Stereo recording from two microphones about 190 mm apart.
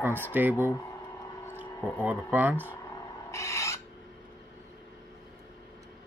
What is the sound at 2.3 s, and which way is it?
Mantra, 10° right (ahead or behind).